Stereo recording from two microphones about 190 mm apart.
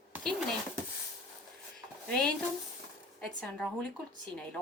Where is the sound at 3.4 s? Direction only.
5° left (ahead or behind).